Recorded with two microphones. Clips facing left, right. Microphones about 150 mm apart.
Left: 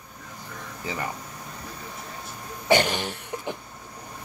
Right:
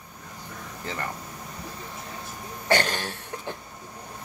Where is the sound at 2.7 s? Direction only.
15° left (ahead or behind).